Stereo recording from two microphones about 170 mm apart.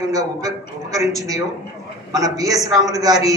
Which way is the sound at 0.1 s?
20° right (ahead or behind).